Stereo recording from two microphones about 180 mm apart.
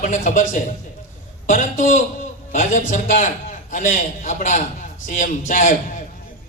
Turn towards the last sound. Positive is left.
turn(degrees=45)  # may be behind; listen again after turning